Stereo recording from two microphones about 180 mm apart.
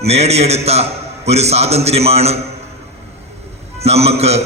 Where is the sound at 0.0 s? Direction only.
35° right (ahead or behind).